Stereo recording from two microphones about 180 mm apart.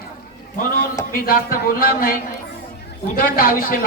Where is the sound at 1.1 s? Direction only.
55° left (ahead or behind).